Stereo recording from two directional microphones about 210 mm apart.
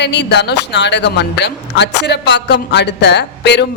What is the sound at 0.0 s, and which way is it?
A man's voice, 55° left (ahead or behind).